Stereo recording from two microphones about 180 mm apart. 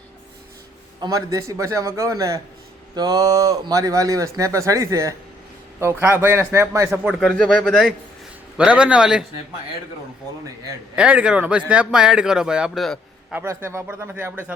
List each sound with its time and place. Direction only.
0.9 s a man's voice: 20° right (ahead or behind)
7.2 s a man's voice: centre (ahead or behind)
10.9 s speech: 5° right (ahead or behind)
13.4 s a man's voice: 15° right (ahead or behind)